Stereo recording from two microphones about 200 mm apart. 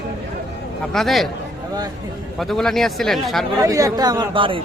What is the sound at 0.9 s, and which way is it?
Speech, centre (ahead or behind).